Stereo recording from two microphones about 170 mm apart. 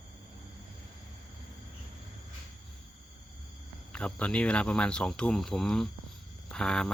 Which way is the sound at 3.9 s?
5° left (ahead or behind).